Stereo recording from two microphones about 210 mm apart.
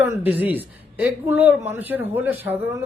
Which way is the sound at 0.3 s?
10° right (ahead or behind).